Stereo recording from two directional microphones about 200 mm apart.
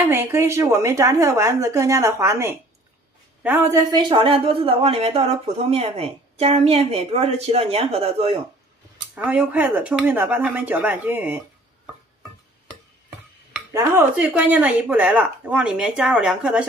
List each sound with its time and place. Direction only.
0.0 s a woman's voice: 10° right (ahead or behind); by 8.4 s 30° right (ahead or behind)
9.1 s speech: 5° right (ahead or behind)
13.7 s speech: 10° right (ahead or behind)